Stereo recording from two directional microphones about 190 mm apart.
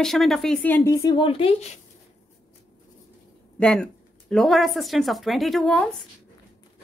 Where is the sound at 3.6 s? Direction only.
5° left (ahead or behind).